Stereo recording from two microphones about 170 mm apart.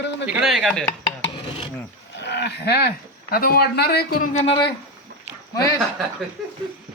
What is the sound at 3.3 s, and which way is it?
Speech, 60° left (ahead or behind).